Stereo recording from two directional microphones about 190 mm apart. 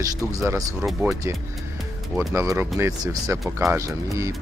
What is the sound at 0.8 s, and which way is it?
Speech, 5° right (ahead or behind).